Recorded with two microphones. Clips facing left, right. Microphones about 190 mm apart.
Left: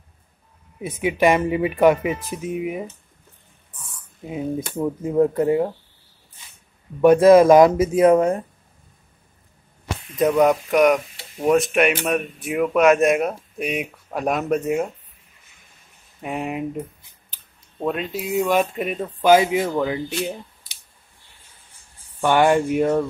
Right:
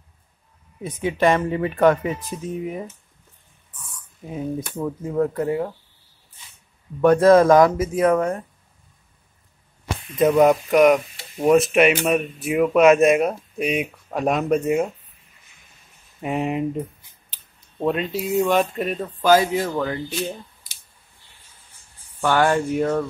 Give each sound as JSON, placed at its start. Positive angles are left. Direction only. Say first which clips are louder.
{"t": 0.7, "sound": "speech", "louder": "left 2 dB", "side_deg": 10}
{"t": 4.3, "sound": "speech", "louder": "left 2 dB", "side_deg": 15}
{"t": 7.0, "sound": "speech", "louder": "left 2 dB", "side_deg": 10}
{"t": 10.1, "sound": "speech", "louder": "right 1 dB", "side_deg": 0}
{"t": 16.2, "sound": "speech", "louder": "right 3 dB", "side_deg": 0}
{"t": 22.2, "sound": "speech", "louder": "left 2 dB", "side_deg": 15}